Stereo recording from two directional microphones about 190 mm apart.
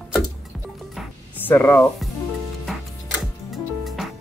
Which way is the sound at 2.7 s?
Centre (ahead or behind).